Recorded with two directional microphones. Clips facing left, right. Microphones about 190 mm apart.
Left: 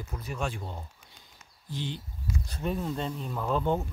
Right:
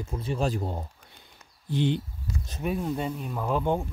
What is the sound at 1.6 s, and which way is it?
Speech, 60° right (ahead or behind).